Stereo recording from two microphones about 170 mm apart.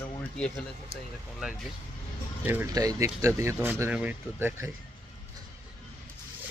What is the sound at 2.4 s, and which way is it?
Speech, 15° right (ahead or behind).